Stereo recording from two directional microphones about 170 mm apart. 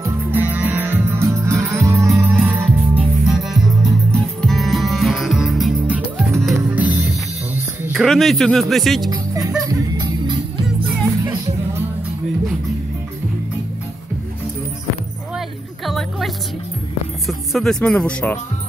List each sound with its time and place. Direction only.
0.0 s music: 10° right (ahead or behind)
7.8 s speech: centre (ahead or behind)
9.1 s music: 20° right (ahead or behind)
15.3 s music: centre (ahead or behind)
17.3 s speech: centre (ahead or behind)